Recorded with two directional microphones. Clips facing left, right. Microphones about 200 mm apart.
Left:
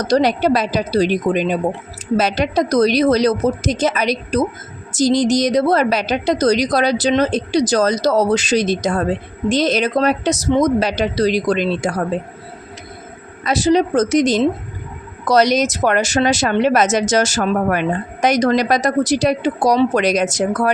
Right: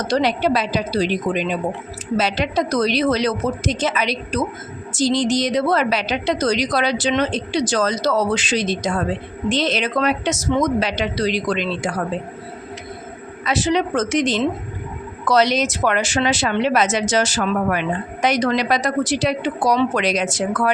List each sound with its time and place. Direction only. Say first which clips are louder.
0.0 s a woman's voice: left 4 dB; 40° left (ahead or behind)
13.4 s a woman's voice: left 5 dB; 40° left (ahead or behind)